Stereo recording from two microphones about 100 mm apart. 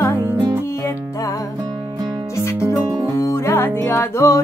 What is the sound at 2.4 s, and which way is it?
Music, 30° left (ahead or behind).